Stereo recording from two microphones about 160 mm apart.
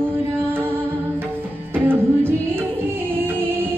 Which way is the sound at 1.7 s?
15° right (ahead or behind).